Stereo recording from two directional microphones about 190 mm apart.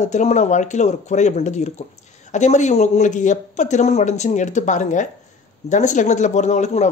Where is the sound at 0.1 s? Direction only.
40° left (ahead or behind).